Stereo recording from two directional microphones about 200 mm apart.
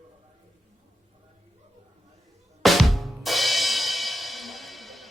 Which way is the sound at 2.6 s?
Centre (ahead or behind).